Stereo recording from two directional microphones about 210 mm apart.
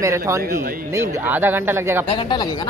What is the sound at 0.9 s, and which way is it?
Speech, 10° right (ahead or behind).